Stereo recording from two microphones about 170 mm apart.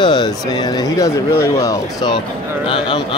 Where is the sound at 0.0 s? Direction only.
25° left (ahead or behind).